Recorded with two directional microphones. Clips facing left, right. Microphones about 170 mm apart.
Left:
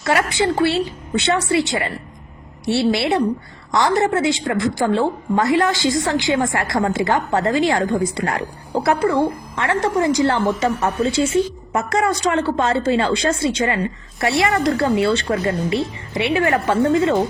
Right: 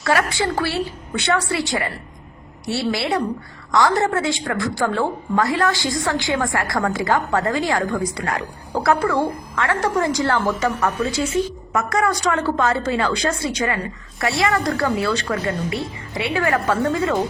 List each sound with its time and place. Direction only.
0.0 s a woman's voice: 25° left (ahead or behind)